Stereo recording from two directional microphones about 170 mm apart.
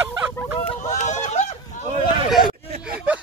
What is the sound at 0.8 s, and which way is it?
Run, 45° left (ahead or behind).